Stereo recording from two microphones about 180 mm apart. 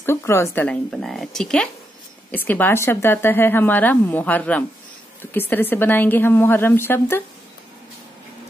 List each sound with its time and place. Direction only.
0.0 s a woman's voice: 15° left (ahead or behind)